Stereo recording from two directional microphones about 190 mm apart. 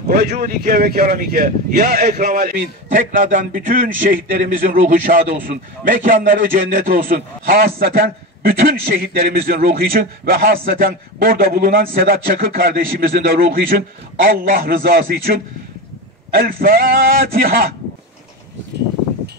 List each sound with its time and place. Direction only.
0.1 s speech: 45° right (ahead or behind)
16.3 s speech: 50° right (ahead or behind)